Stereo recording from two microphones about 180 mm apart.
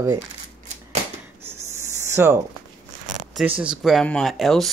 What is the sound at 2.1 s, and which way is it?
Speech, 15° right (ahead or behind).